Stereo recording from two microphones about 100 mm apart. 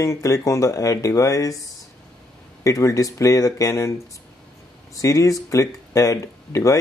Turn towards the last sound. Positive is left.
turn(degrees=35)  # may be behind; listen again after turning